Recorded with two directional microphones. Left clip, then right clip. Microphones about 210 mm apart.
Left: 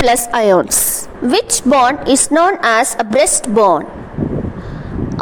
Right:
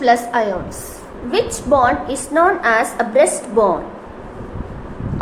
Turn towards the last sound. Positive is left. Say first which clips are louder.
# left 4 dB
turn(degrees=45)  # may be behind; listen again after turning